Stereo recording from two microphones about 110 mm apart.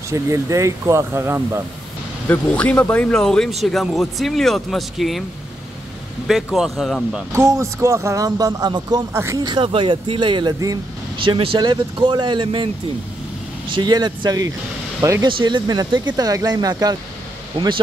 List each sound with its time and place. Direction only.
0.1 s speech: 30° right (ahead or behind)
2.2 s speech: 15° left (ahead or behind)
6.2 s speech: centre (ahead or behind)
7.3 s speech: 25° right (ahead or behind)
9.1 s speech: 25° right (ahead or behind)
9.5 s speech: 50° right (ahead or behind)
13.7 s speech: 40° right (ahead or behind)
15.0 s speech: 25° right (ahead or behind)
15.2 s speech: 45° right (ahead or behind)
17.6 s speech: 55° right (ahead or behind)